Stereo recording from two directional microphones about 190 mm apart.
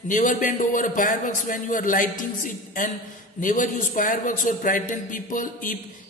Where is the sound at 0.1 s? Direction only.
45° left (ahead or behind).